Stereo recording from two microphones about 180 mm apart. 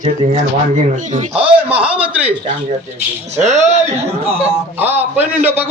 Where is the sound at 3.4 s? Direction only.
40° right (ahead or behind).